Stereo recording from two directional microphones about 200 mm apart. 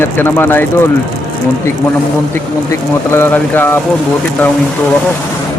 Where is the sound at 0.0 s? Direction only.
10° left (ahead or behind).